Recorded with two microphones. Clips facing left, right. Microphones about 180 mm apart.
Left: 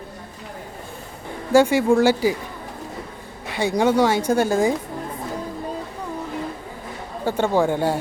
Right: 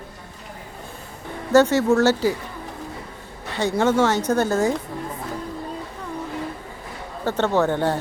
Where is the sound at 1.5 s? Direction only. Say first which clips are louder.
Even; 10° left (ahead or behind).